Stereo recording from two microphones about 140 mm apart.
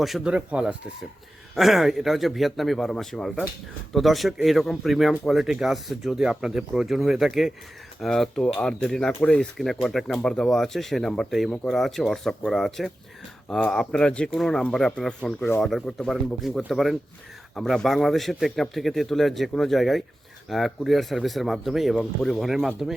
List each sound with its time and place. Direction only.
0.0 s speech: 5° right (ahead or behind)